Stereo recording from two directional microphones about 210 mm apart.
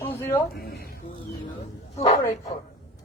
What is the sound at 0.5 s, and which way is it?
Speech, 45° left (ahead or behind).